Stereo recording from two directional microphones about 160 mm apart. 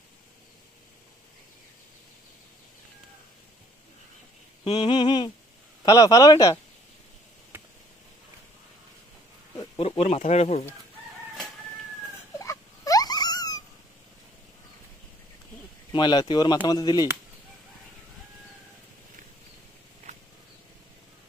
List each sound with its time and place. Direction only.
4.8 s humming: 25° left (ahead or behind)
5.9 s speech: 25° left (ahead or behind)
7.5 s a sound: 15° right (ahead or behind)
9.8 s speech: 40° left (ahead or behind)
12.4 s a sound: 20° left (ahead or behind)
15.9 s speech: 30° left (ahead or behind)